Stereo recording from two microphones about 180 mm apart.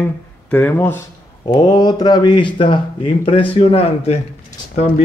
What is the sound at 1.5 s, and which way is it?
Speech, 25° left (ahead or behind).